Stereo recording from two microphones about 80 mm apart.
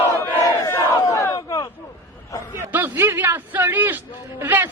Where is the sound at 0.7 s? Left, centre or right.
Left.